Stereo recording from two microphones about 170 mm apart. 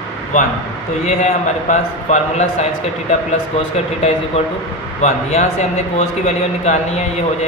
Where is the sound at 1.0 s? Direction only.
45° left (ahead or behind).